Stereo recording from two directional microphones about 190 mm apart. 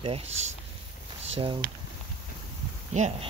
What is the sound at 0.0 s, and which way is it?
Speech, 30° right (ahead or behind).